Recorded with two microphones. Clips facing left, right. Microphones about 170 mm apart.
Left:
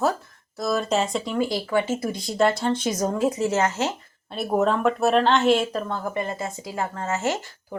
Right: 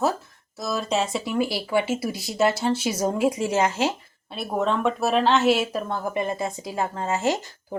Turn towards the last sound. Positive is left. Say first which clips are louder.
# right 2 dB
turn(degrees=-15)  # may be behind; listen again after turning